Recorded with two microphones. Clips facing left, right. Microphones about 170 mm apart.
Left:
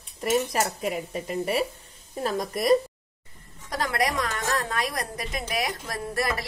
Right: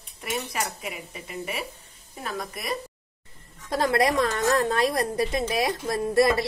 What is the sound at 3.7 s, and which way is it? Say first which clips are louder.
A woman's voice: right 5 dB; 30° right (ahead or behind).